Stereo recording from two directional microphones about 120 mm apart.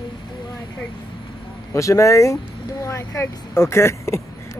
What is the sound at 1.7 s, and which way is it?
Speech, 25° left (ahead or behind).